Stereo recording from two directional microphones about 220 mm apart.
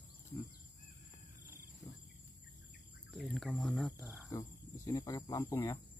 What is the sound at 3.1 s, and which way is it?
Speech, centre (ahead or behind).